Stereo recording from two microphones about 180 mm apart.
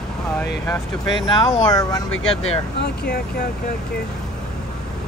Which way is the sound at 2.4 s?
65° left (ahead or behind).